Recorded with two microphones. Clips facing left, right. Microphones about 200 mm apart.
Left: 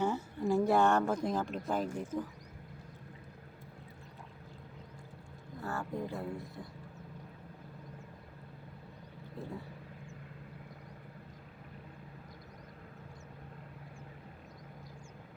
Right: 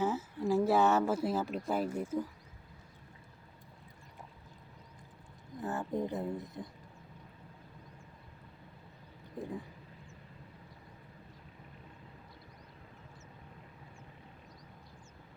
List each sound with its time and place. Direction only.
0.0 s speech: centre (ahead or behind)
5.5 s speech: 20° right (ahead or behind)
9.4 s speech: 15° right (ahead or behind)